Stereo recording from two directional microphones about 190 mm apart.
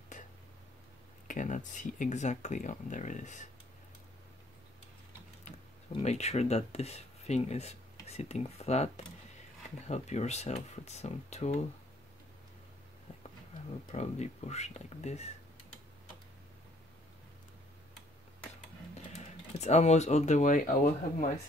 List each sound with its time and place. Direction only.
0.1 s a sound: 40° left (ahead or behind)
1.2 s speech: 45° left (ahead or behind)
5.9 s speech: 35° left (ahead or behind)
13.9 s speech: 35° left (ahead or behind)
19.1 s speech: 35° left (ahead or behind)